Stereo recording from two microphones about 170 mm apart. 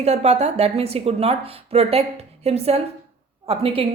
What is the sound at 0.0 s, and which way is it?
A woman's voice, 40° right (ahead or behind).